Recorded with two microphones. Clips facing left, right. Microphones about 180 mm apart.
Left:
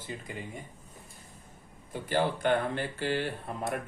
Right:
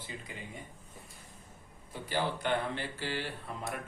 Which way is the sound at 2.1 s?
50° left (ahead or behind).